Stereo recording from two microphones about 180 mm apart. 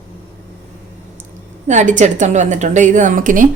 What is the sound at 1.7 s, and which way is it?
A woman's voice, 40° right (ahead or behind).